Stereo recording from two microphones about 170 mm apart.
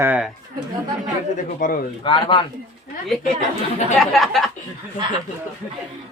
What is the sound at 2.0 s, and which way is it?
Speech, 30° left (ahead or behind).